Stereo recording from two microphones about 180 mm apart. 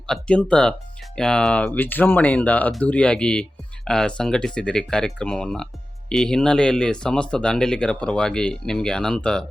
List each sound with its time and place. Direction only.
0.1 s speech: 5° left (ahead or behind)